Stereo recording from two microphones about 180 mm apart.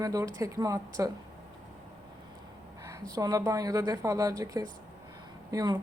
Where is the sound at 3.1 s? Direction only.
20° right (ahead or behind).